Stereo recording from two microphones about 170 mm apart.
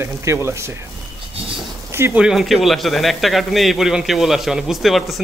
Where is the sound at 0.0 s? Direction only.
15° right (ahead or behind).